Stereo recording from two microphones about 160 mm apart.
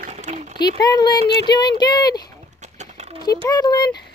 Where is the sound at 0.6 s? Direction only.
90° left.